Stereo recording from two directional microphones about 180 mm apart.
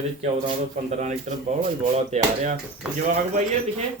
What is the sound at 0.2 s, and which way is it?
Speech, 40° right (ahead or behind).